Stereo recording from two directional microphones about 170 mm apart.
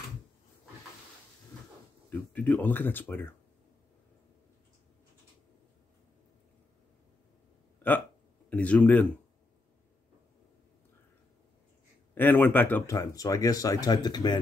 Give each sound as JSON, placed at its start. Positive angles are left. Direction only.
{"t": 2.0, "sound": "speech", "side_deg": 10}
{"t": 8.5, "sound": "speech", "side_deg": 10}
{"t": 12.2, "sound": "speech", "side_deg": 10}